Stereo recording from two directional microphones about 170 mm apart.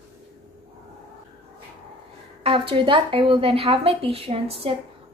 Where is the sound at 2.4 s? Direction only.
30° right (ahead or behind).